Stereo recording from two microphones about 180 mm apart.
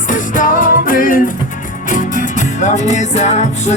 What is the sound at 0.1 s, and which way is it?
Music, 45° left (ahead or behind).